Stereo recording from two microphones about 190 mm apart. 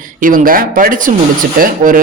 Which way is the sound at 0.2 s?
45° right (ahead or behind).